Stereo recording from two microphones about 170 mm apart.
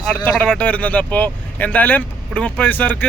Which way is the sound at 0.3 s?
5° left (ahead or behind).